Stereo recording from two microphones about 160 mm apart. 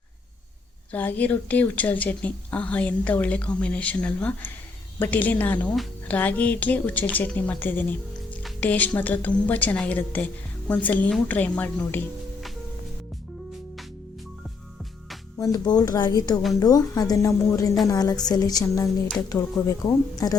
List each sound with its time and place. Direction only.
0.9 s speech: 10° left (ahead or behind)
15.4 s a woman's voice: 20° left (ahead or behind)